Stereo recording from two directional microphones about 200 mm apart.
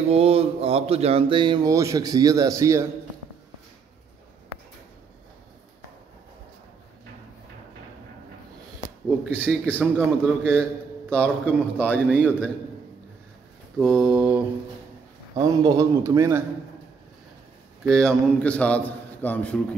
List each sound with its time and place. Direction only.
0.1 s a sound: 30° right (ahead or behind); by 2.9 s 15° right (ahead or behind)
9.2 s a man's voice: 5° right (ahead or behind)
9.9 s mantra: 5° left (ahead or behind)
10.5 s a man's voice: 10° right (ahead or behind)
13.7 s mantra: centre (ahead or behind)
15.3 s a man's voice: 20° right (ahead or behind)
17.8 s a man's voice: 5° left (ahead or behind)